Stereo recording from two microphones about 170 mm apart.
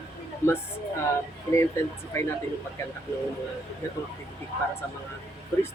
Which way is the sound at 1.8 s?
15° left (ahead or behind).